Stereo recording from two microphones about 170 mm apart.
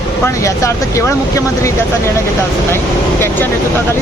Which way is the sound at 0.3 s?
15° left (ahead or behind).